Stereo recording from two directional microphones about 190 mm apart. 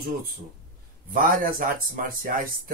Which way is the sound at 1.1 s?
45° right (ahead or behind).